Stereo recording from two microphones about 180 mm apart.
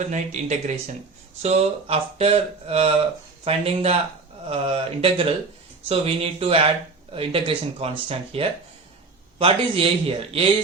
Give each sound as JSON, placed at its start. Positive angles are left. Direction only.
{"t": 0.1, "sound": "speech", "side_deg": -40}